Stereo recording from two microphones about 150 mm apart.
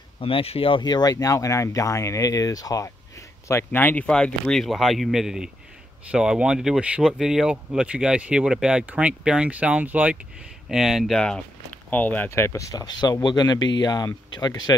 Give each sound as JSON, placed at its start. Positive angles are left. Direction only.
{"t": 0.2, "sound": "speech", "side_deg": 40}